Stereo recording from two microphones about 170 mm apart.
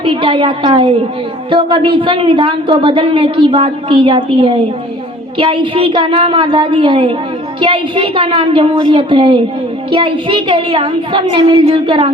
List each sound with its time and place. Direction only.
0.0 s a woman's voice: 30° right (ahead or behind)